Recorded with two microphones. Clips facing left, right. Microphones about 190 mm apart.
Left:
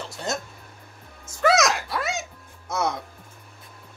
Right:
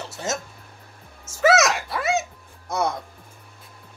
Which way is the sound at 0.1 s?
5° right (ahead or behind).